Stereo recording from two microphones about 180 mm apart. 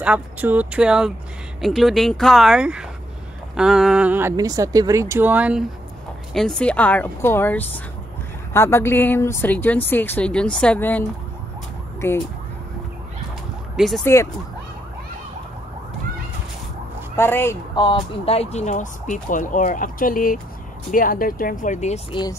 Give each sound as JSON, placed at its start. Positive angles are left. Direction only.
{"t": 0.0, "sound": "speech", "side_deg": -10}
{"t": 6.3, "sound": "speech", "side_deg": 5}
{"t": 13.7, "sound": "speech", "side_deg": 0}
{"t": 14.0, "sound": "speech", "side_deg": 15}
{"t": 17.2, "sound": "speech", "side_deg": 15}
{"t": 17.7, "sound": "speech", "side_deg": 30}
{"t": 22.1, "sound": "speech", "side_deg": 20}